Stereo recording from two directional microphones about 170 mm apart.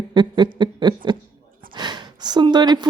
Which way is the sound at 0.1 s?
25° right (ahead or behind).